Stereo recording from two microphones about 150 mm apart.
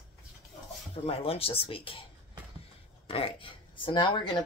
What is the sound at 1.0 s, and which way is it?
Speech, 40° left (ahead or behind).